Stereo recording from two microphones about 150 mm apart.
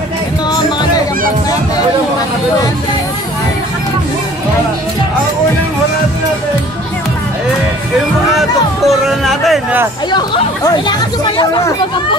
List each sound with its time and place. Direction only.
0.5 s music: 30° left (ahead or behind)
8.4 s music: centre (ahead or behind)
10.1 s speech: 30° left (ahead or behind)